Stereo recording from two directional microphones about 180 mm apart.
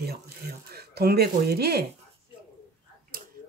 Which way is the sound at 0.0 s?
60° right (ahead or behind).